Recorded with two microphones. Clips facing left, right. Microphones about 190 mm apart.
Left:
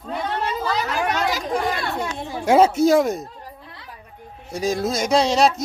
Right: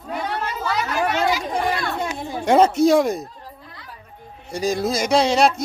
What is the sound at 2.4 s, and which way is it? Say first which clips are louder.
Speech: even; 5° left (ahead or behind).